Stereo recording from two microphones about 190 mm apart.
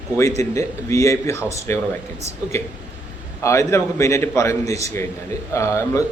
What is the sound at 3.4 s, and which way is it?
A man's voice, 15° left (ahead or behind).